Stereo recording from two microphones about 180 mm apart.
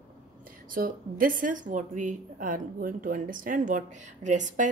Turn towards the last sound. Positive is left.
turn(degrees=-45)  # may be behind; listen again after turning